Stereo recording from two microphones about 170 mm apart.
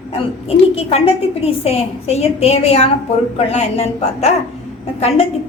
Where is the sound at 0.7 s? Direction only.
35° left (ahead or behind).